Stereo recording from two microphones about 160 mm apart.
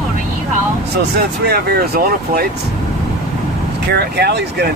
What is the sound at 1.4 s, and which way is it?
Speech, 90° right.